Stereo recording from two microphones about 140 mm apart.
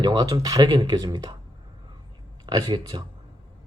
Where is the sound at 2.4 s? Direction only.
30° right (ahead or behind).